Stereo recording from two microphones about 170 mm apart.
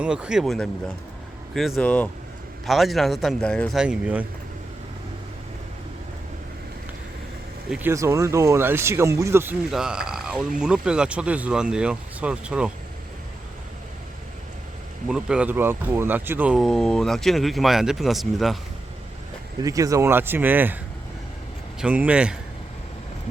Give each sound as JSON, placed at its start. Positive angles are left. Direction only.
{"t": 0.0, "sound": "speech", "side_deg": -5}
{"t": 7.7, "sound": "speech", "side_deg": -10}
{"t": 15.0, "sound": "speech", "side_deg": -5}
{"t": 19.6, "sound": "speech", "side_deg": -20}
{"t": 21.8, "sound": "speech", "side_deg": -5}